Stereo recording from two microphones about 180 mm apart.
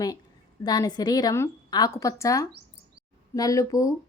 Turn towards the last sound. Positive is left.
turn(degrees=20)  # may be behind; listen again after turning